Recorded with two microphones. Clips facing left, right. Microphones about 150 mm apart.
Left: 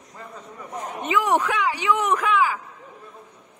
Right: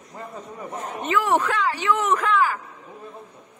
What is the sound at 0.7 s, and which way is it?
Speech, 15° left (ahead or behind).